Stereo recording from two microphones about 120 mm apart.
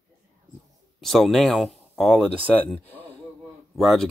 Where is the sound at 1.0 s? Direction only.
Centre (ahead or behind).